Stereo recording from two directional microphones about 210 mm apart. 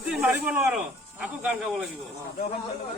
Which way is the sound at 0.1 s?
5° right (ahead or behind).